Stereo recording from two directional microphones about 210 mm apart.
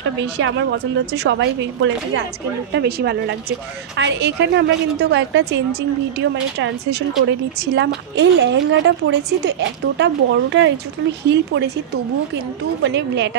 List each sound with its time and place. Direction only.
0.2 s a woman's voice: 60° right (ahead or behind)
12.8 s a woman's voice: 55° right (ahead or behind)